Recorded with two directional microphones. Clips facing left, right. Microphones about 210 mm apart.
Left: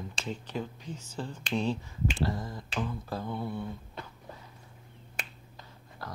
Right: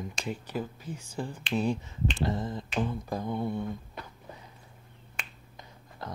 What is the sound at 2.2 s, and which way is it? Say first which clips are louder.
Finger snapping: right 2 dB; 20° right (ahead or behind).